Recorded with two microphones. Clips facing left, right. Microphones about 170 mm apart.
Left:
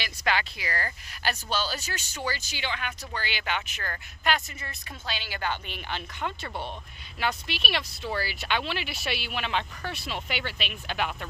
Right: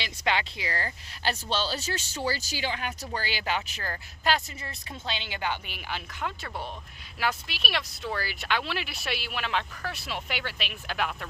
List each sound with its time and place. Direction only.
0.0 s speech: 25° right (ahead or behind); by 11.3 s centre (ahead or behind)